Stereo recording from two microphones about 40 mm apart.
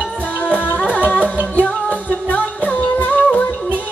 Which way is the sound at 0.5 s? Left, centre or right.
Left.